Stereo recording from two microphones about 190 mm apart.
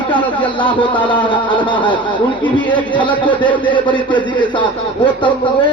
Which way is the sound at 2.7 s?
25° left (ahead or behind).